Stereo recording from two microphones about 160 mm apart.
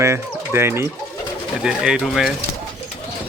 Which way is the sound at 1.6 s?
5° right (ahead or behind).